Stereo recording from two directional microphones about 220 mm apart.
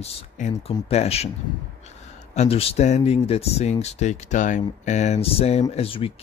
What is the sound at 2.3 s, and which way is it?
Speech, 25° left (ahead or behind).